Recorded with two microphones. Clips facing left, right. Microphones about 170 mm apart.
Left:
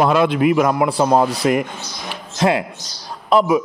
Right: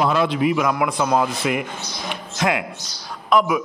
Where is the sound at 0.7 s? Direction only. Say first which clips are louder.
Left 4 dB; 35° left (ahead or behind).